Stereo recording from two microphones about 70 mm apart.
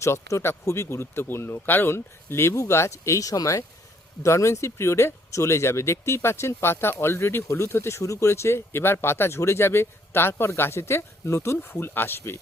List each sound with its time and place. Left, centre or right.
0.0 s speech: left